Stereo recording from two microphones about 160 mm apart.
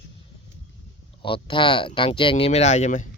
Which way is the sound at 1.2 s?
30° left (ahead or behind).